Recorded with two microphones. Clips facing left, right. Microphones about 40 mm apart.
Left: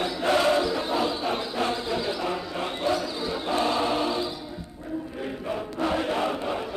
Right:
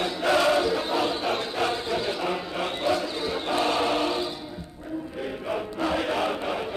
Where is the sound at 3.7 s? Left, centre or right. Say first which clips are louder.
Right 1 dB; right.